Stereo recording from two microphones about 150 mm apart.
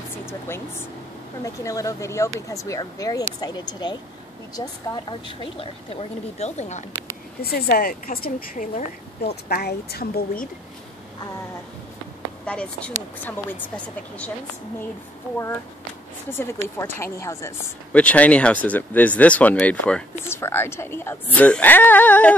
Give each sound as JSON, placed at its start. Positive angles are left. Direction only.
{"t": 0.3, "sound": "a woman's voice", "side_deg": 15}
{"t": 7.4, "sound": "a woman's voice", "side_deg": 90}
{"t": 12.4, "sound": "speech", "side_deg": 10}
{"t": 16.3, "sound": "speech", "side_deg": 15}
{"t": 17.9, "sound": "speech", "side_deg": 10}